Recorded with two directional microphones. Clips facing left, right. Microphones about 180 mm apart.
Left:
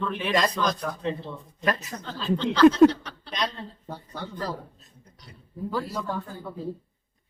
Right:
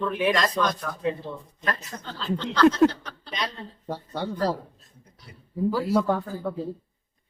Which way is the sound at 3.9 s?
75° right (ahead or behind).